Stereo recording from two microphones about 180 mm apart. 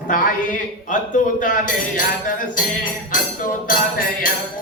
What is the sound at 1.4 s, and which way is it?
Speech, 45° left (ahead or behind).